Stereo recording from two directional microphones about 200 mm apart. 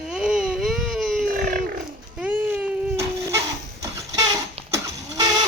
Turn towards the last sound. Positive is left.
turn(degrees=-15)  # may be behind; listen again after turning